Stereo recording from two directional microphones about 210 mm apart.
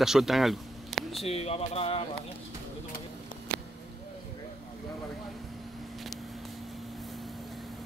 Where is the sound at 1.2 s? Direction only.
30° left (ahead or behind).